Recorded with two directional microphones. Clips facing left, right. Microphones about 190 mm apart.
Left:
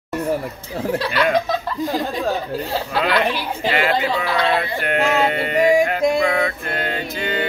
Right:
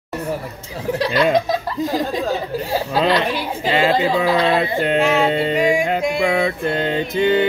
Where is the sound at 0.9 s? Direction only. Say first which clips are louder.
Right 3 dB; 15° right (ahead or behind).